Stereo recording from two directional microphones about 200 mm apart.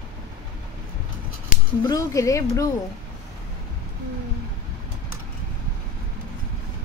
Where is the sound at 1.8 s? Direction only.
15° left (ahead or behind).